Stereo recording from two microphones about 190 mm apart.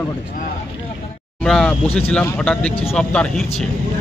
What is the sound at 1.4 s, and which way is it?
A man's voice, 5° left (ahead or behind).